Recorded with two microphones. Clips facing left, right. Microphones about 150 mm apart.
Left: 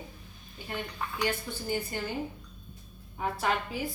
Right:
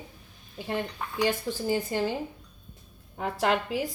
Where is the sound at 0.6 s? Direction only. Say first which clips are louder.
Right 5 dB; 90° right.